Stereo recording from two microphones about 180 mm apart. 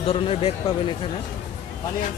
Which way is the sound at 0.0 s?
35° left (ahead or behind).